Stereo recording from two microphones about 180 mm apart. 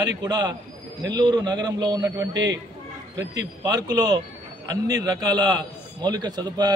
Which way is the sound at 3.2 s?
20° right (ahead or behind).